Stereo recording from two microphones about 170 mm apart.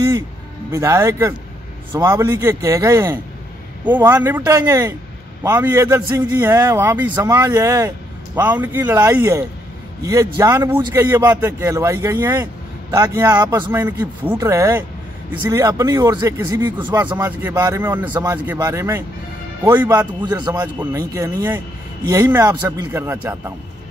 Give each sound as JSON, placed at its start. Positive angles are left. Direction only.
{"t": 0.7, "sound": "a man's voice", "side_deg": -15}